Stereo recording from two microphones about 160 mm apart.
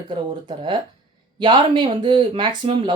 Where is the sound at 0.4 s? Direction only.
30° right (ahead or behind).